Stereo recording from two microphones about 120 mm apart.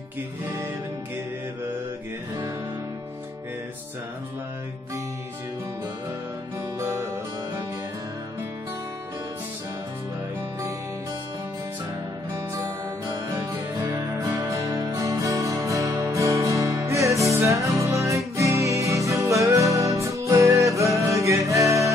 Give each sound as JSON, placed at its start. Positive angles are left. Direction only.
{"t": 6.8, "sound": "music", "side_deg": -25}
{"t": 12.5, "sound": "music", "side_deg": -30}
{"t": 14.5, "sound": "music", "side_deg": -30}